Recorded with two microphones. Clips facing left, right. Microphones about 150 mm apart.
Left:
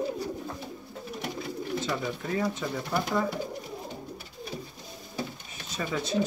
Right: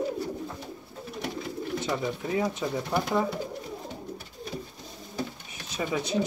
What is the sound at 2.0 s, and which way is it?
Speech, 15° right (ahead or behind).